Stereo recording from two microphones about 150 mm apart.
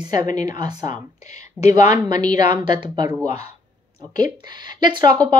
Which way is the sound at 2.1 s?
25° right (ahead or behind).